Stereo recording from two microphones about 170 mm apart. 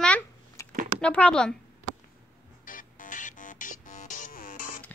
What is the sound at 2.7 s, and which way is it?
Music, 50° left (ahead or behind).